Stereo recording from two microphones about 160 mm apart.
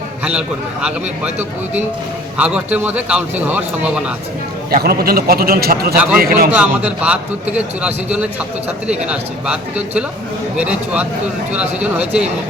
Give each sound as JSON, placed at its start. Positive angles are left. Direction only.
{"t": 0.3, "sound": "a man's voice", "side_deg": -5}
{"t": 4.7, "sound": "a man's voice", "side_deg": -75}
{"t": 6.5, "sound": "a man's voice", "side_deg": -10}